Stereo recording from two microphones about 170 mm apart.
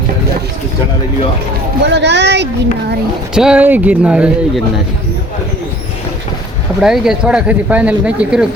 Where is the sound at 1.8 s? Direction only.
90° right.